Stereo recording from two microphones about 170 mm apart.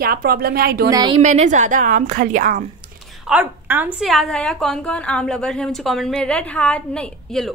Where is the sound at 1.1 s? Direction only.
40° right (ahead or behind).